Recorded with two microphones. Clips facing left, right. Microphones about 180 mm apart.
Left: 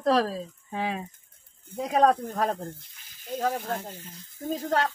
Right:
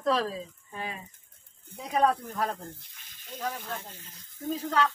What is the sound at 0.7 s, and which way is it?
Speech, 90° left.